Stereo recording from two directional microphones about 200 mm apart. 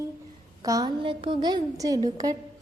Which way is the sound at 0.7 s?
20° right (ahead or behind).